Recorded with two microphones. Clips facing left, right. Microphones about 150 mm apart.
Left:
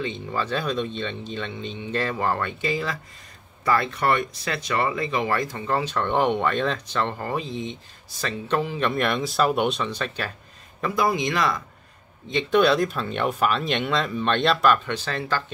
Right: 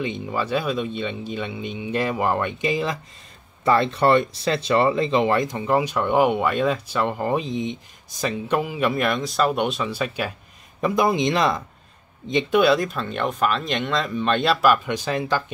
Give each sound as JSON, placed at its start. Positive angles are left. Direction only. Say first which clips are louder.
{"t": 0.0, "sound": "speech", "louder": "right 2 dB", "side_deg": -15}
{"t": 10.8, "sound": "speech", "louder": "right 3 dB", "side_deg": -20}
{"t": 12.5, "sound": "speech", "louder": "even", "side_deg": 0}